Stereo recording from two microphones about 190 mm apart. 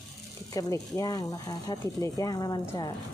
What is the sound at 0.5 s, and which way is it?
Speech, 20° left (ahead or behind).